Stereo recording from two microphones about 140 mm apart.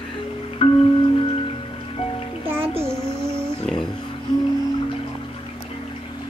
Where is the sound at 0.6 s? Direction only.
45° left (ahead or behind).